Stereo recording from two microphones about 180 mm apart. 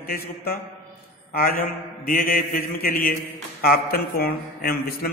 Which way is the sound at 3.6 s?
55° left (ahead or behind).